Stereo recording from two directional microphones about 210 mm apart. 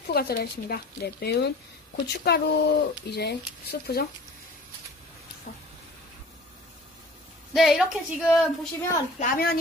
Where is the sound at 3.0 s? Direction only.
50° left (ahead or behind).